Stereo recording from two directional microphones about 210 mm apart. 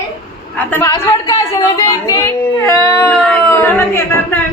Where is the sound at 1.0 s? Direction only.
15° left (ahead or behind).